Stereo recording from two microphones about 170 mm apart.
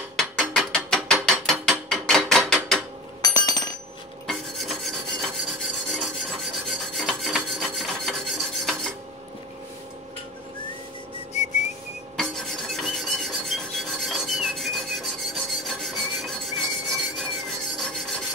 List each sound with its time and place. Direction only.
0.1 s ratchet: 5° left (ahead or behind)
3.2 s a sound: 25° left (ahead or behind)
4.3 s filing: centre (ahead or behind)
11.4 s whistling: 45° left (ahead or behind)
12.2 s filing: centre (ahead or behind)